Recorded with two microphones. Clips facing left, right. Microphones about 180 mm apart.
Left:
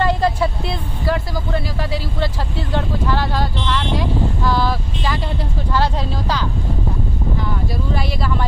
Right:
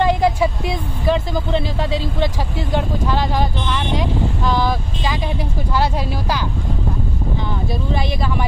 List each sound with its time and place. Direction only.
0.0 s speech: 15° right (ahead or behind)
7.9 s speech: 20° right (ahead or behind)